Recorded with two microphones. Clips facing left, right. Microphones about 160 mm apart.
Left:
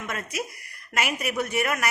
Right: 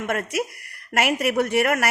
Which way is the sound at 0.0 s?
65° right (ahead or behind).